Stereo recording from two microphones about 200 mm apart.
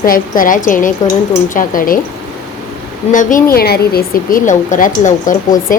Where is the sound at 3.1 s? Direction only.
40° left (ahead or behind).